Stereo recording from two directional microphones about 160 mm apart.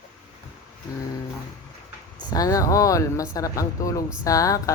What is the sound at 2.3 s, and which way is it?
Speech, 20° left (ahead or behind).